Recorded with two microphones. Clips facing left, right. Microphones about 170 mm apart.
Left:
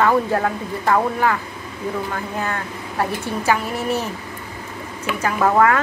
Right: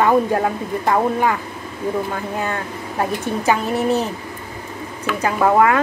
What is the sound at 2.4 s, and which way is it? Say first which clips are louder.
Speech: right 2 dB; 20° right (ahead or behind).